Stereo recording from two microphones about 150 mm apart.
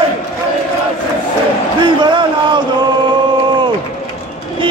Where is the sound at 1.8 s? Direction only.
30° right (ahead or behind).